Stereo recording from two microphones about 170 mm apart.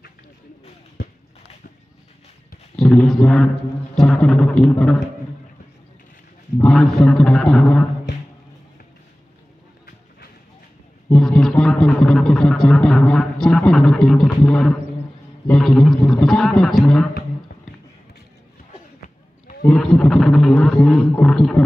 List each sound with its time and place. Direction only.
2.7 s a sound: 5° left (ahead or behind)
3.9 s speech: 5° left (ahead or behind)
6.6 s speech: 5° left (ahead or behind)
11.1 s speech: 5° left (ahead or behind)
19.6 s speech: 5° left (ahead or behind)